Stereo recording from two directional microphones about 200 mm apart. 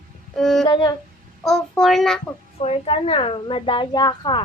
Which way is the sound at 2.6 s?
30° left (ahead or behind).